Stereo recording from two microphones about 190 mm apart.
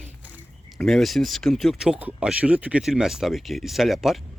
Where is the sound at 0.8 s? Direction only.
Centre (ahead or behind).